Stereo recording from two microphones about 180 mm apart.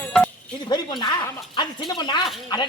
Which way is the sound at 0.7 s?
25° left (ahead or behind).